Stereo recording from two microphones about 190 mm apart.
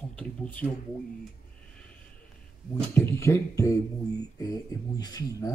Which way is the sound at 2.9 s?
15° left (ahead or behind).